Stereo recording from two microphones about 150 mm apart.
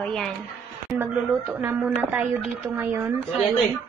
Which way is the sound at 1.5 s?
15° right (ahead or behind).